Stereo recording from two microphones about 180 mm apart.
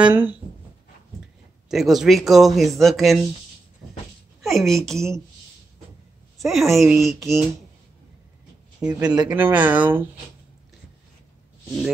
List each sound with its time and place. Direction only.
0.0 s speech: 10° right (ahead or behind)
1.7 s speech: centre (ahead or behind)
4.4 s a woman's voice: centre (ahead or behind)
6.4 s speech: centre (ahead or behind)
9.0 s speech: 20° right (ahead or behind)
9.3 s speech: 10° right (ahead or behind)